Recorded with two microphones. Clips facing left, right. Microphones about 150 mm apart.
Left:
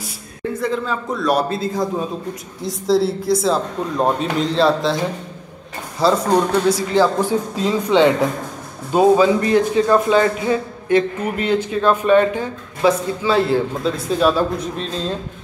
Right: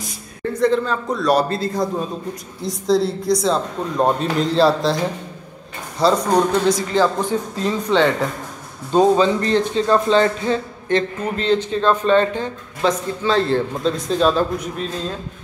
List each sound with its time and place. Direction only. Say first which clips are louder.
0.0 s a man's voice: even; 5° left (ahead or behind)
7.2 s a man's voice: left 2 dB; 15° left (ahead or behind)
14.6 s a man's voice: left 1 dB; 30° left (ahead or behind)